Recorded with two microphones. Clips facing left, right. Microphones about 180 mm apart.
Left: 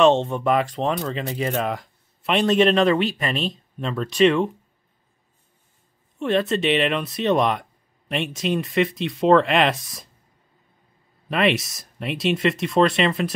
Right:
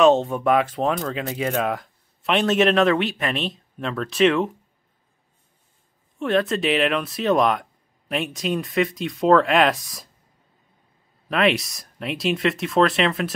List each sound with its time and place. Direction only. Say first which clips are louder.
0.0 s speech: right 1 dB; centre (ahead or behind)
6.1 s speech: even; centre (ahead or behind)
11.2 s speech: even; centre (ahead or behind)